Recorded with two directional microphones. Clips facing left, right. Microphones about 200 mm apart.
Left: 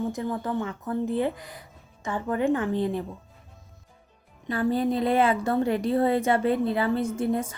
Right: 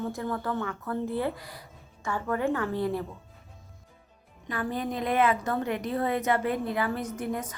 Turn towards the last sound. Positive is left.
turn(degrees=30)  # may be behind; listen again after turning